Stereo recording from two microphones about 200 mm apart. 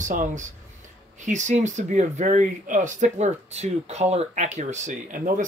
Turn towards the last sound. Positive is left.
turn(degrees=-40)  # may be behind; listen again after turning